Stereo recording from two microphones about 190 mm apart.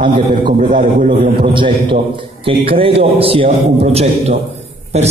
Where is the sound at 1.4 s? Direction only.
25° right (ahead or behind).